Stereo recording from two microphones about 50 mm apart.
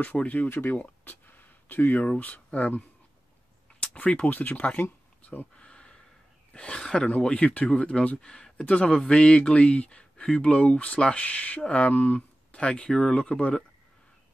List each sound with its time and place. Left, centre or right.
0.2 s speech: left
0.5 s speech: left
0.7 s speech: left
3.8 s speech: left
5.2 s a sound: left
6.5 s speech: centre
8.6 s speech: left
8.9 s speech: centre